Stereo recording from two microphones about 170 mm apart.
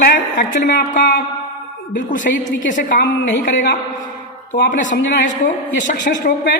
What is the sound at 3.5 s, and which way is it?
Speech, 90° left.